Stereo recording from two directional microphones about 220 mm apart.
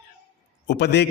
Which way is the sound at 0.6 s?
50° left (ahead or behind).